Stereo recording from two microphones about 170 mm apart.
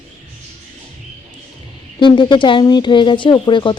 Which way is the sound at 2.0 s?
25° left (ahead or behind).